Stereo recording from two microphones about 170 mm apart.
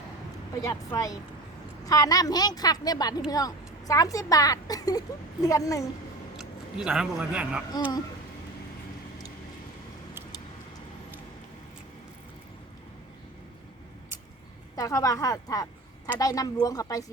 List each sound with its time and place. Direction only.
0.6 s a woman's voice: 20° left (ahead or behind)
6.3 s speech: 5° right (ahead or behind)
14.8 s a woman's voice: 20° left (ahead or behind)